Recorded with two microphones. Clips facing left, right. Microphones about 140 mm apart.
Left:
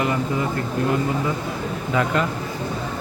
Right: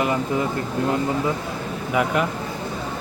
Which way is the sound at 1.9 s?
15° right (ahead or behind).